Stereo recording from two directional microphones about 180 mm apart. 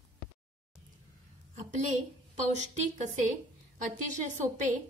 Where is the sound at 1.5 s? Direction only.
40° right (ahead or behind).